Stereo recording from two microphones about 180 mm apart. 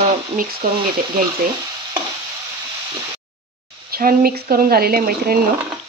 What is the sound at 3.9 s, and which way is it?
Speech, 55° right (ahead or behind).